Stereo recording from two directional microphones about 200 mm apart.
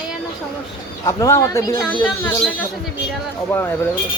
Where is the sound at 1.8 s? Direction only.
5° left (ahead or behind).